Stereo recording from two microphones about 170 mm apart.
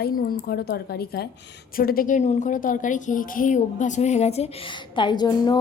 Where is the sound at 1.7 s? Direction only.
60° left (ahead or behind); by 5.6 s 25° left (ahead or behind).